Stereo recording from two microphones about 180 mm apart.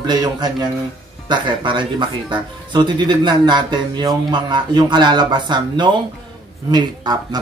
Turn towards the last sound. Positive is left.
turn(degrees=-25)  # may be behind; listen again after turning